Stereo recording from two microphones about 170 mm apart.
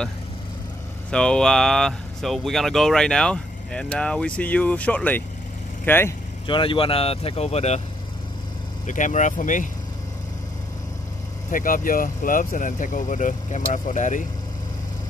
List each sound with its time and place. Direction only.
1.1 s speech: 5° left (ahead or behind)
6.4 s speech: 30° left (ahead or behind)
8.8 s speech: 45° left (ahead or behind)
11.5 s speech: 55° left (ahead or behind)